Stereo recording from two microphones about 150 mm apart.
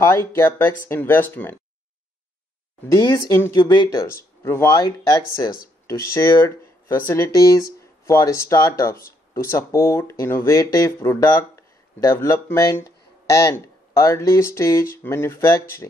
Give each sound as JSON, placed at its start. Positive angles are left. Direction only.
{"t": 0.0, "sound": "speech", "side_deg": 15}
{"t": 2.9, "sound": "speech", "side_deg": 25}